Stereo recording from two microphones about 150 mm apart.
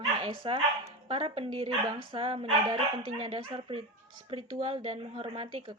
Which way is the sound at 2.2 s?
40° right (ahead or behind).